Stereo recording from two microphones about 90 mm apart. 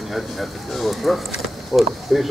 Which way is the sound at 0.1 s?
Centre (ahead or behind).